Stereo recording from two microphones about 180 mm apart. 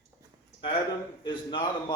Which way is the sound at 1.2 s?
25° left (ahead or behind).